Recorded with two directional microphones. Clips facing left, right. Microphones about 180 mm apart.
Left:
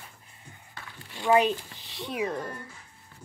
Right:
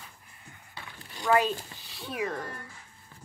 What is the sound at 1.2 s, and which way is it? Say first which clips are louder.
Speech: left 3 dB; 20° left (ahead or behind).